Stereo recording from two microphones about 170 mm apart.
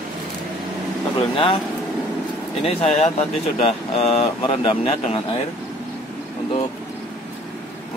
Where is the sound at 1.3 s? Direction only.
30° left (ahead or behind).